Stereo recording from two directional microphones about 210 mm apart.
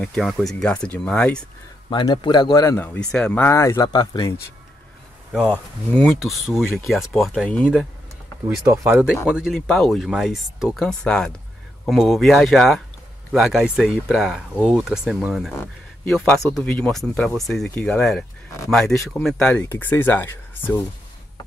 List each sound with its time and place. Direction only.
0.0 s speech: centre (ahead or behind)
1.9 s speech: 20° left (ahead or behind)
5.9 s speech: centre (ahead or behind)
8.6 s speech: 10° right (ahead or behind)
15.5 s speech: 10° left (ahead or behind)